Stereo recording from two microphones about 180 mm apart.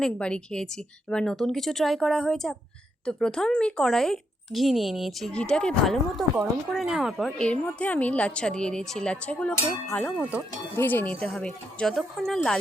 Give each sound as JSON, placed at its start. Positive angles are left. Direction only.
{"t": 0.0, "sound": "speech", "side_deg": 5}
{"t": 10.2, "sound": "speech", "side_deg": -10}
{"t": 10.8, "sound": "speech", "side_deg": 10}